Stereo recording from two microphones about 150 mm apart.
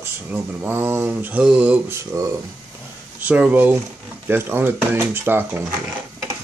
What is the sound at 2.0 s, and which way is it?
Speech, 20° right (ahead or behind).